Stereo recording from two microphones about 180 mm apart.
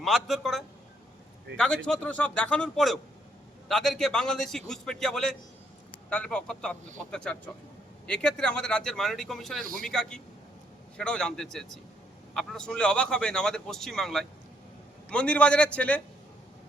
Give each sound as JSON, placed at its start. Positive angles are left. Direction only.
{"t": 0.0, "sound": "a man's voice", "side_deg": 0}